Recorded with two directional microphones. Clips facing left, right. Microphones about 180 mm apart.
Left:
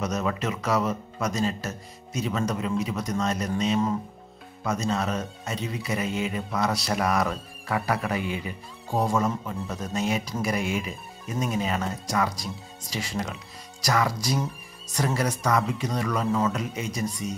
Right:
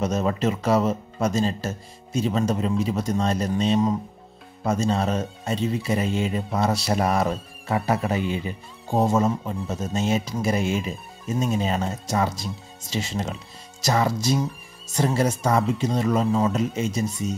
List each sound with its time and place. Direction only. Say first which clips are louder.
0.0 s speech: right 5 dB; 30° right (ahead or behind)